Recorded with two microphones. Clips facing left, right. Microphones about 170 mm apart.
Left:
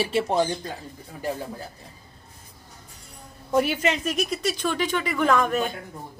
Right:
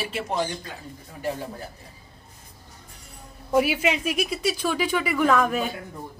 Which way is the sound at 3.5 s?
5° right (ahead or behind).